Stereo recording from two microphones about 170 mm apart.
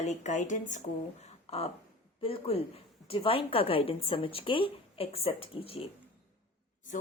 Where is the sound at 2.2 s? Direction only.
30° left (ahead or behind).